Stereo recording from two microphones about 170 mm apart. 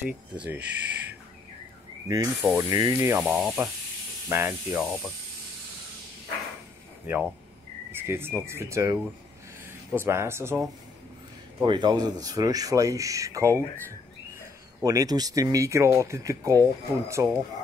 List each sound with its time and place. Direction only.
0.6 s speech: 80° right
2.0 s speech: 15° right (ahead or behind)
3.2 s speech: centre (ahead or behind)
7.1 s speech: 5° right (ahead or behind)
11.6 s speech: 25° right (ahead or behind)
14.8 s speech: 20° right (ahead or behind)